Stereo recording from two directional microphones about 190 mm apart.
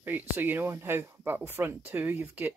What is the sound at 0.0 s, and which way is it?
Speech, 10° right (ahead or behind).